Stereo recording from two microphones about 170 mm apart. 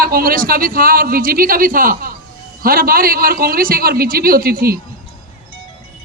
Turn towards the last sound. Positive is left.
turn(degrees=-60)  # may be behind; listen again after turning